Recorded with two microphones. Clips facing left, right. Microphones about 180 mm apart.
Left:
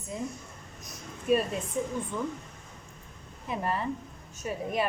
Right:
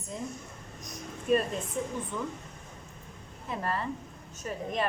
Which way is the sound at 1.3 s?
5° left (ahead or behind).